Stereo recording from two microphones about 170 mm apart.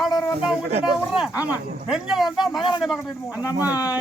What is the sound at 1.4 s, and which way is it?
Speech, 5° right (ahead or behind).